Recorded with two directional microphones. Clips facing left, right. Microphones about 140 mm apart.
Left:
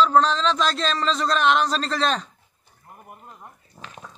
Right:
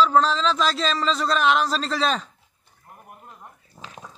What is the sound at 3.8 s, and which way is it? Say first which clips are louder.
Dog: even; centre (ahead or behind).